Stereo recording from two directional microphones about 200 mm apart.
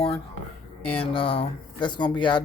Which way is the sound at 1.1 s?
25° left (ahead or behind).